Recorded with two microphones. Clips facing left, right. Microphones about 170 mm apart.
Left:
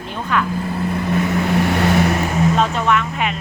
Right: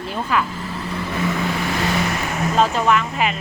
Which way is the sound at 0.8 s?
55° left (ahead or behind).